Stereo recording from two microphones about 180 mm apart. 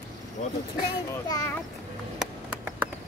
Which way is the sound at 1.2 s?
20° left (ahead or behind).